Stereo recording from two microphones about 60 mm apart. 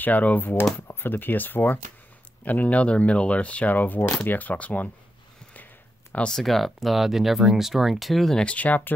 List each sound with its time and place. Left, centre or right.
0.0 s speech: left
6.3 s speech: centre
8.5 s speech: left